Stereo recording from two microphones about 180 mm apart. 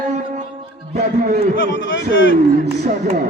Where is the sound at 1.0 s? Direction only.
60° right (ahead or behind).